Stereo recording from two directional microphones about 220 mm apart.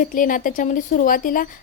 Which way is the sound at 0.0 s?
40° left (ahead or behind).